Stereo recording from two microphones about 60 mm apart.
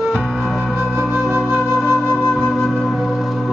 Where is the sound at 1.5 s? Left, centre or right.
Right.